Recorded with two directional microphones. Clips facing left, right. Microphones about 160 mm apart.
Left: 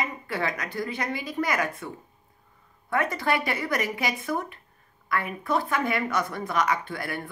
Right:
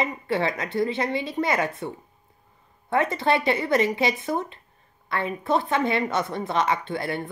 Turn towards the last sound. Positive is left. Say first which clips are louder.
# right 5 dB
turn(degrees=-25)  # may be behind; listen again after turning